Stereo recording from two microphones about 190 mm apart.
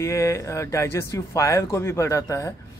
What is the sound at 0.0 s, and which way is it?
Speech, 15° left (ahead or behind).